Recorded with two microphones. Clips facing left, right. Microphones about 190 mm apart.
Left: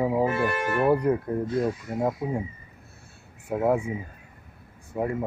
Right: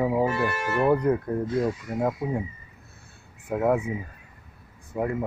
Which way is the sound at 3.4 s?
10° left (ahead or behind).